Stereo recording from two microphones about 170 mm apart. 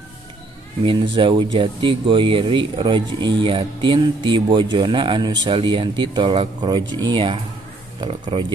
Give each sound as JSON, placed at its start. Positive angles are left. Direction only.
{"t": 1.1, "sound": "speech", "side_deg": -30}